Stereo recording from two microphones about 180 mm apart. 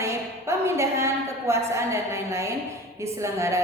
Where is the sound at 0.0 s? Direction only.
15° right (ahead or behind).